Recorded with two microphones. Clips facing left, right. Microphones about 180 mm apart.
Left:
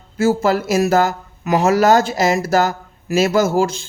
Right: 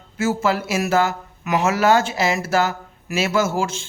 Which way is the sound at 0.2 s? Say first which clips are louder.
Left 5 dB; 35° left (ahead or behind).